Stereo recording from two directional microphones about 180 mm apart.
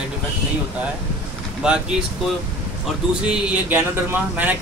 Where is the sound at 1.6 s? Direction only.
5° right (ahead or behind).